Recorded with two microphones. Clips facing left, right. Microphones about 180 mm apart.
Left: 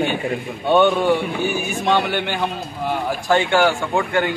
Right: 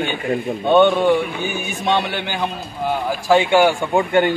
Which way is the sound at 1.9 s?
Centre (ahead or behind).